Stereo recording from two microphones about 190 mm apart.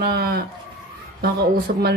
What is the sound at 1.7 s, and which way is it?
Speech, 55° right (ahead or behind).